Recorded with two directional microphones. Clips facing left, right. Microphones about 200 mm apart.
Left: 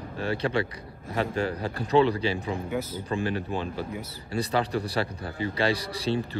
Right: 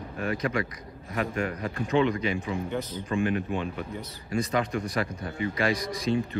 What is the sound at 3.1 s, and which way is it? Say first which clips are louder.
Speech: right 3 dB; 35° left (ahead or behind).